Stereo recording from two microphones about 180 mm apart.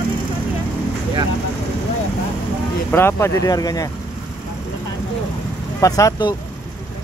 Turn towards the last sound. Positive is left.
turn(degrees=20)  # may be behind; listen again after turning